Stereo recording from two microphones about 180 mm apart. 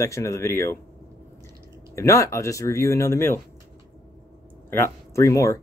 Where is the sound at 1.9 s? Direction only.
15° left (ahead or behind).